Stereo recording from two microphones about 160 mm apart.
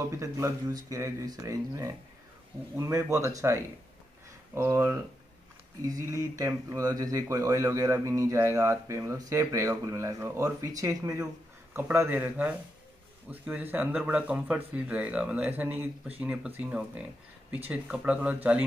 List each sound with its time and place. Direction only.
0.0 s speech: 15° right (ahead or behind)